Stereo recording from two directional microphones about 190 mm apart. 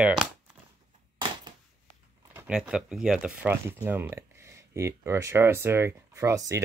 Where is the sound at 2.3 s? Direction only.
5° right (ahead or behind).